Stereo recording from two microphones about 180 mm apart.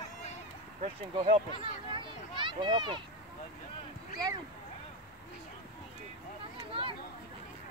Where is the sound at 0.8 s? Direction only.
40° right (ahead or behind).